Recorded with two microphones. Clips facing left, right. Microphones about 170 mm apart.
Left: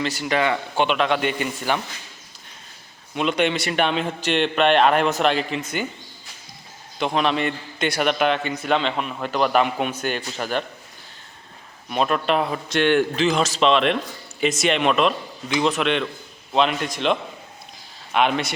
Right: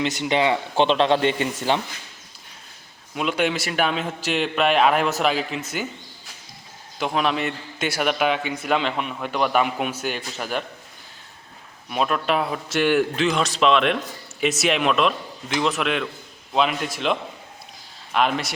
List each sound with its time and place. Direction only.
0.0 s a man's voice: 20° right (ahead or behind)
3.2 s a man's voice: 5° right (ahead or behind)
7.0 s a man's voice: 5° right (ahead or behind)
11.9 s a man's voice: centre (ahead or behind)